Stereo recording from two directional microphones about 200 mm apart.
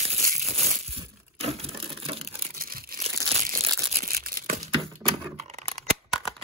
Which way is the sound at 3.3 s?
45° right (ahead or behind).